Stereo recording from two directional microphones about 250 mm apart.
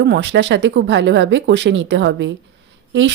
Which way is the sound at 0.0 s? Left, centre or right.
Right.